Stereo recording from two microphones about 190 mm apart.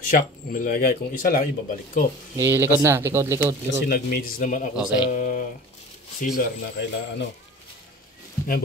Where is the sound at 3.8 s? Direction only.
50° left (ahead or behind).